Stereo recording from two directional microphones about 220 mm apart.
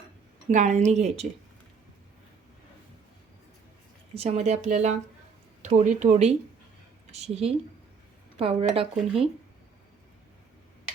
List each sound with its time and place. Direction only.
0.5 s speech: 35° right (ahead or behind)
4.1 s speech: 30° right (ahead or behind)